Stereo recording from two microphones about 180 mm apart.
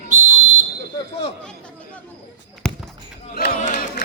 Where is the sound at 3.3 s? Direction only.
60° left (ahead or behind).